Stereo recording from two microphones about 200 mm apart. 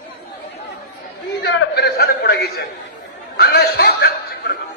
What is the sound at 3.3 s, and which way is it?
Chuckle, 55° left (ahead or behind).